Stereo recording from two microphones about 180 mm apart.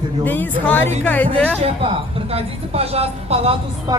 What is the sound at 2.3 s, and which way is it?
Speech, 35° right (ahead or behind).